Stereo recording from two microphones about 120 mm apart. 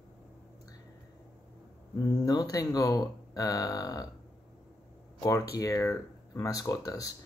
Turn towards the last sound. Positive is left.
turn(degrees=30)  # may be behind; listen again after turning